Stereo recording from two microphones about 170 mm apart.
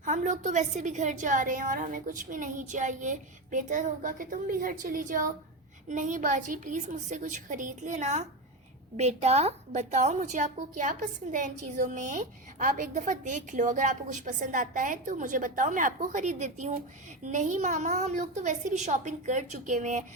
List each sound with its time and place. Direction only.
0.0 s a woman's voice: 50° right (ahead or behind)